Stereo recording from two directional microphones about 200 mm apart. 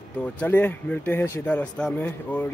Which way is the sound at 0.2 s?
10° left (ahead or behind).